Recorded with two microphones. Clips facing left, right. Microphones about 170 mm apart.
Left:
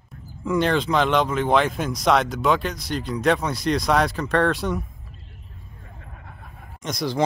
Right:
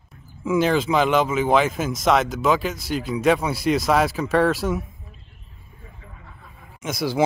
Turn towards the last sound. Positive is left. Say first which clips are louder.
# right 2 dB
turn(degrees=-5)  # may be behind; listen again after turning